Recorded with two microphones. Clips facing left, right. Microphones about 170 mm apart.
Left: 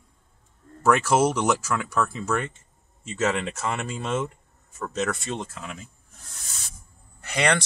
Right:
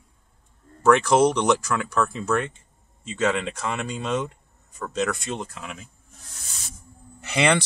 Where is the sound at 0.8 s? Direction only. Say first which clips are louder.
Right 3 dB; 5° left (ahead or behind).